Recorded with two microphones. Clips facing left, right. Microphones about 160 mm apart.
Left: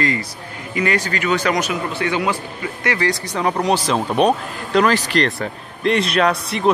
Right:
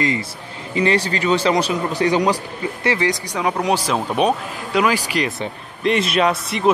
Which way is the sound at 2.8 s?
25° right (ahead or behind).